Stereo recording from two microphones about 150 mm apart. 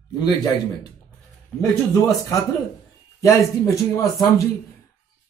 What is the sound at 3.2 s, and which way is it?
Speech, 20° left (ahead or behind).